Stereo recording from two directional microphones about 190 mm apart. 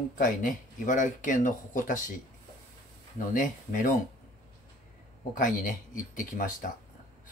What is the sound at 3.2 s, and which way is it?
Speech, 45° left (ahead or behind).